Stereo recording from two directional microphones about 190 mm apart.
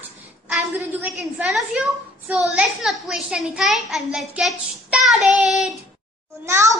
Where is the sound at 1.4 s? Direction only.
5° right (ahead or behind).